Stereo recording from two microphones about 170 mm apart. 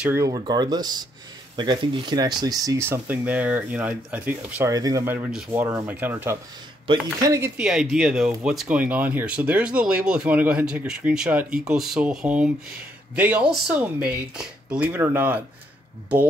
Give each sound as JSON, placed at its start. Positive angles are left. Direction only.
{"t": 0.0, "sound": "speech", "side_deg": -15}
{"t": 2.9, "sound": "speech", "side_deg": -10}
{"t": 7.6, "sound": "speech", "side_deg": -5}